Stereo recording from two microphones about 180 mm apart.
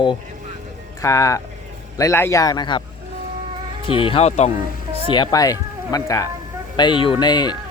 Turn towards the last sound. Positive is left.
turn(degrees=25)  # may be behind; listen again after turning